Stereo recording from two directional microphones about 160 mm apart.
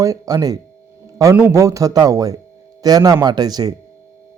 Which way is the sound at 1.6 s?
20° right (ahead or behind).